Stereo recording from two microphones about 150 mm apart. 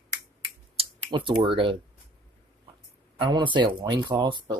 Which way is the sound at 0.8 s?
35° right (ahead or behind).